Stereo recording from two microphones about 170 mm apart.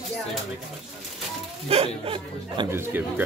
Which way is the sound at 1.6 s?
35° right (ahead or behind).